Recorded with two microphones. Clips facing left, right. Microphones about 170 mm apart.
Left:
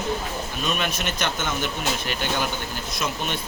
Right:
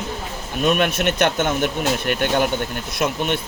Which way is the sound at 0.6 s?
60° right (ahead or behind).